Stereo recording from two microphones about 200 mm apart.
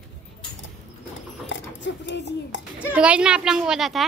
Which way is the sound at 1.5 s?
65° left (ahead or behind).